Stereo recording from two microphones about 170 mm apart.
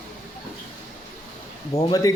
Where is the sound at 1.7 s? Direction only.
20° left (ahead or behind).